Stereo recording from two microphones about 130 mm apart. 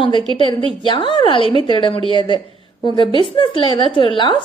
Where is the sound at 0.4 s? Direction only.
40° left (ahead or behind).